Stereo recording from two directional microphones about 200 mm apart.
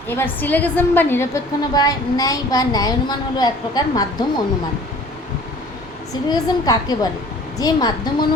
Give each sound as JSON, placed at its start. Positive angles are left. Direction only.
{"t": 0.1, "sound": "a woman's voice", "side_deg": 10}
{"t": 6.3, "sound": "a woman's voice", "side_deg": 20}